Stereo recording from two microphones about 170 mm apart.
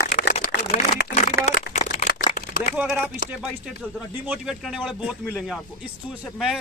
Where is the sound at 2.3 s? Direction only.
55° left (ahead or behind).